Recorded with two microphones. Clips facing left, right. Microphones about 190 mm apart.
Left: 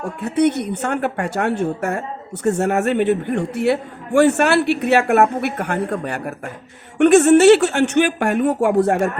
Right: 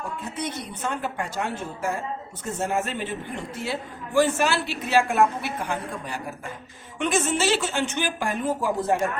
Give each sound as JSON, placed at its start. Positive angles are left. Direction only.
{"t": 0.2, "sound": "a woman's voice", "side_deg": 65}